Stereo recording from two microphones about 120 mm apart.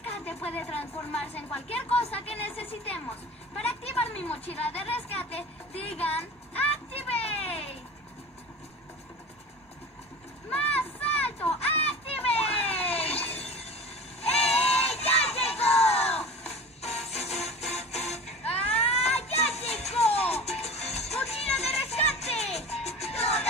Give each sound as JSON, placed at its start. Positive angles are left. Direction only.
{"t": 0.3, "sound": "a woman's voice", "side_deg": 55}
{"t": 5.3, "sound": "music", "side_deg": 55}
{"t": 10.6, "sound": "a sound", "side_deg": 55}
{"t": 14.2, "sound": "crowd", "side_deg": 60}